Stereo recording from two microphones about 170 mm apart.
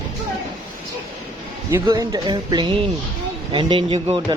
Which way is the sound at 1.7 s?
20° right (ahead or behind).